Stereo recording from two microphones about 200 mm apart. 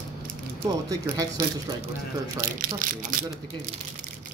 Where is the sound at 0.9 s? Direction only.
20° right (ahead or behind).